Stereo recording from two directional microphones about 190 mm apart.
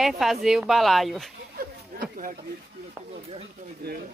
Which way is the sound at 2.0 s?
45° right (ahead or behind).